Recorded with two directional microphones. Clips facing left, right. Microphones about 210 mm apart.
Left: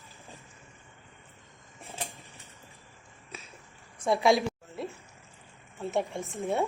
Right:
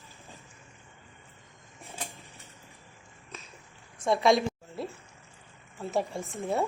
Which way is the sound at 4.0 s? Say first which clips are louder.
Even; centre (ahead or behind).